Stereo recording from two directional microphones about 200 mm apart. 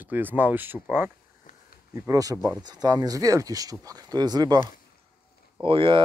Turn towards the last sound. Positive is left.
turn(degrees=-25)  # may be behind; listen again after turning